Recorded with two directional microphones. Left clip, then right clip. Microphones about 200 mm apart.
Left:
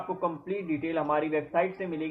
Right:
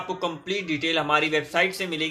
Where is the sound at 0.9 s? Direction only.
10° right (ahead or behind).